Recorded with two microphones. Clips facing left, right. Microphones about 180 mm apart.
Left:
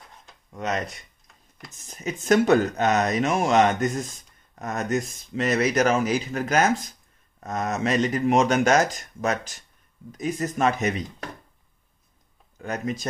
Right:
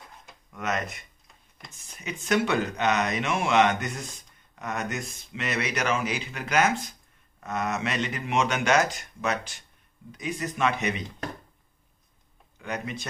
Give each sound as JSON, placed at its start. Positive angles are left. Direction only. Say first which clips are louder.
{"t": 0.5, "sound": "speech", "louder": "left 2 dB", "side_deg": 30}
{"t": 12.5, "sound": "speech", "louder": "left 4 dB", "side_deg": 40}